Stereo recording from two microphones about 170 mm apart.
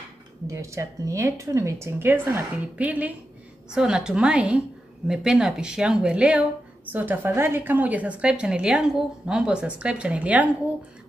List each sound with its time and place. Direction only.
0.5 s a woman's voice: 20° right (ahead or behind)